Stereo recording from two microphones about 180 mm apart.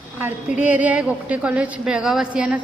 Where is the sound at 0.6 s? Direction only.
10° right (ahead or behind).